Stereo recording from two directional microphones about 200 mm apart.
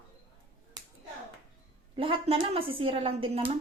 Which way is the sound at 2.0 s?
25° right (ahead or behind).